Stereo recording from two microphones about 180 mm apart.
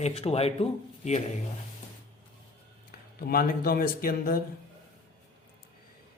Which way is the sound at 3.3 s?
55° left (ahead or behind).